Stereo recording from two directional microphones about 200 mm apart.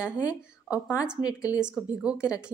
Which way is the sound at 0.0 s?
5° right (ahead or behind).